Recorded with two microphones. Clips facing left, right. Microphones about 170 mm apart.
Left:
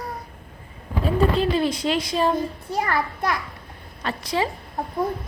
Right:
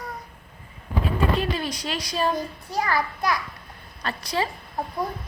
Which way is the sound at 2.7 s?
55° left (ahead or behind).